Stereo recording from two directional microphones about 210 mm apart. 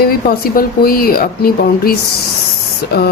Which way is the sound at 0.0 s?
45° left (ahead or behind).